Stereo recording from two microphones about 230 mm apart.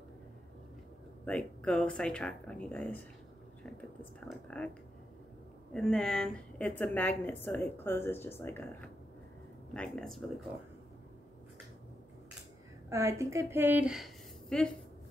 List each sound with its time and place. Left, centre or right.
1.2 s speech: centre
5.7 s a woman's voice: centre
12.9 s a woman's voice: centre